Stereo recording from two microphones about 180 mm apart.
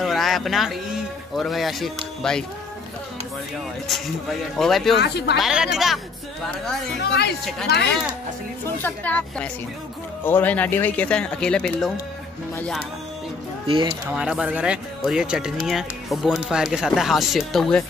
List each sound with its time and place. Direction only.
0.0 s a sound: centre (ahead or behind)
1.3 s speech: centre (ahead or behind)
3.8 s speech: centre (ahead or behind)
5.0 s speech: 65° left (ahead or behind)
5.4 s speech: 5° right (ahead or behind)
7.0 s a woman's voice: 65° left (ahead or behind)
8.6 s speech: 10° left (ahead or behind)
13.7 s speech: 30° right (ahead or behind)
14.1 s speech: 5° right (ahead or behind)